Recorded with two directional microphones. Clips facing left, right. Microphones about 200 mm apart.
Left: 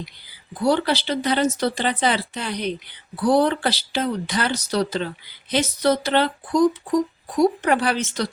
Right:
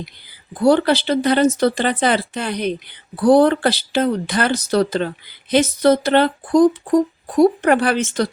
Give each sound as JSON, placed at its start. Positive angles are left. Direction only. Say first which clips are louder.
{"t": 0.6, "sound": "speech", "louder": "right 6 dB", "side_deg": -50}